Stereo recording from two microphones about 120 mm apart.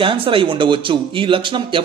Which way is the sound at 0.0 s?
45° right (ahead or behind).